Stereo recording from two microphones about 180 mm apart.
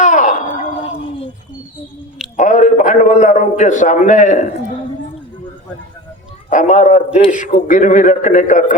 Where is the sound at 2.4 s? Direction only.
45° left (ahead or behind).